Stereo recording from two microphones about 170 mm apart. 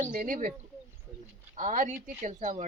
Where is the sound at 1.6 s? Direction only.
45° right (ahead or behind).